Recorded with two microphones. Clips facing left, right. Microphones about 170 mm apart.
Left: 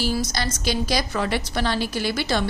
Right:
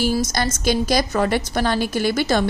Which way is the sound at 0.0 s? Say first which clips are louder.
Right 4 dB; 45° right (ahead or behind).